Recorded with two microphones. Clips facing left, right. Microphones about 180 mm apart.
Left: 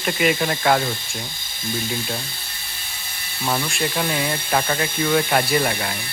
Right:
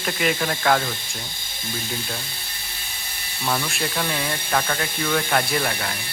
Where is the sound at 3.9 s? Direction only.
10° left (ahead or behind).